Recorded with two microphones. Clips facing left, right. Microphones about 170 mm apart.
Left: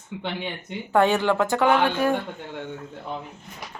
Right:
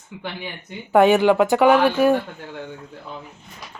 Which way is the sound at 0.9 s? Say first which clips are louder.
Right 6 dB; 15° right (ahead or behind).